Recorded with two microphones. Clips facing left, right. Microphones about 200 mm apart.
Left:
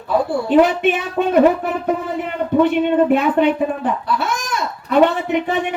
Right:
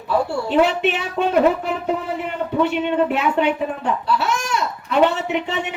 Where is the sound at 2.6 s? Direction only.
50° left (ahead or behind).